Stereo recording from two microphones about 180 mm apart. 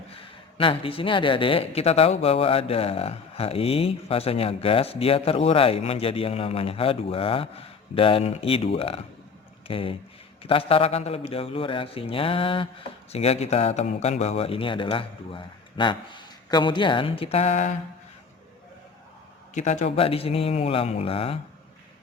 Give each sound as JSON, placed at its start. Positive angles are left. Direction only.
{"t": 0.1, "sound": "speech", "side_deg": 30}
{"t": 19.5, "sound": "speech", "side_deg": 40}